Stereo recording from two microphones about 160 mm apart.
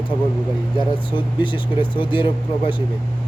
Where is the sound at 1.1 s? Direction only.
30° left (ahead or behind).